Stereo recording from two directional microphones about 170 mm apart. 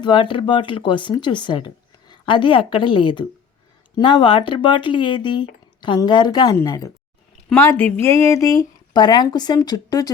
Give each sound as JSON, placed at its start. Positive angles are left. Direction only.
{"t": 0.0, "sound": "speech", "side_deg": 30}